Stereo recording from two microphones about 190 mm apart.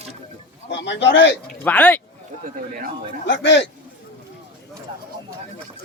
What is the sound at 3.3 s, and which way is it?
Speech, 70° left (ahead or behind).